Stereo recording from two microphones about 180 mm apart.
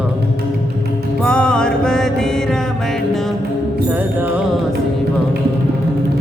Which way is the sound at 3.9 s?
10° right (ahead or behind).